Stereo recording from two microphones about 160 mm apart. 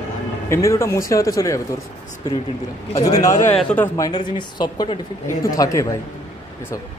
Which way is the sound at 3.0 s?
20° left (ahead or behind).